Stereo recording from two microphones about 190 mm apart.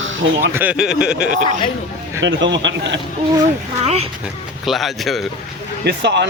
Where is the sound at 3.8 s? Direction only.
30° right (ahead or behind).